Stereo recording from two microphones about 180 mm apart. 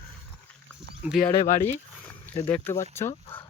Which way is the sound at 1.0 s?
5° right (ahead or behind).